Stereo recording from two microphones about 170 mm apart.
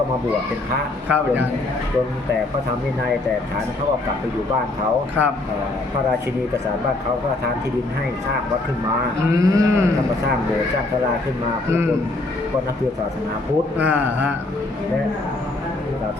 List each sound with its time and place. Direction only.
1.0 s speech: 10° right (ahead or behind)
9.3 s speech: 20° right (ahead or behind)
13.7 s speech: 10° right (ahead or behind)